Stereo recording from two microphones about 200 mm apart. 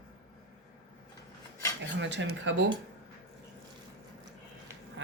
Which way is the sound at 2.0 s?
65° right (ahead or behind).